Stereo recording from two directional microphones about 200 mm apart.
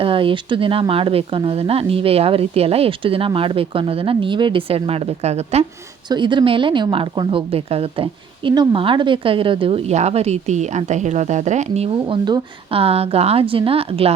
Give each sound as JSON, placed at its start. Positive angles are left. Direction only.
{"t": 0.0, "sound": "speech", "side_deg": -25}